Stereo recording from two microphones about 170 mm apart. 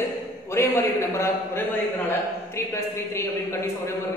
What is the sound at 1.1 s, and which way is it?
A man's voice, 15° left (ahead or behind).